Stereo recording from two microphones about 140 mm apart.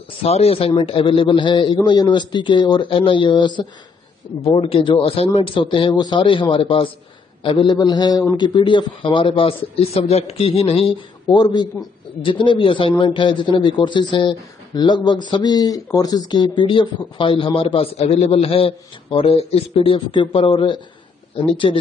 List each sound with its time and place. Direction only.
0.2 s a man's voice: 45° left (ahead or behind)
11.2 s a man's voice: 30° left (ahead or behind)